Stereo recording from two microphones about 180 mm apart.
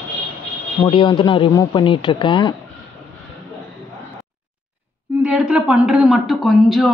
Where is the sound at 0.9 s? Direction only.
30° left (ahead or behind).